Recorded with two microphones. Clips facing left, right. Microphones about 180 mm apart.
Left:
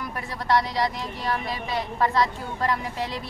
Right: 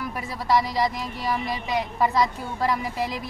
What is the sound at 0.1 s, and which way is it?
A woman's voice, 5° right (ahead or behind).